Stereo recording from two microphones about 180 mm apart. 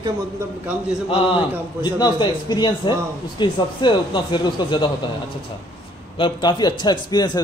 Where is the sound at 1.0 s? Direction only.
30° left (ahead or behind).